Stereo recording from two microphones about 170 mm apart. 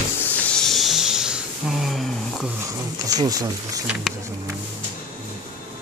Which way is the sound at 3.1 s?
20° right (ahead or behind).